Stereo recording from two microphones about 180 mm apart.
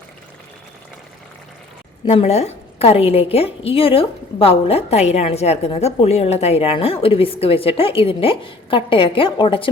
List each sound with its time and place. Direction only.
2.0 s a woman's voice: 35° left (ahead or behind)